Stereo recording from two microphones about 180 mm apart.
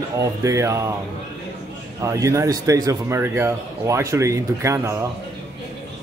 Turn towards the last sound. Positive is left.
turn(degrees=-15)  # may be behind; listen again after turning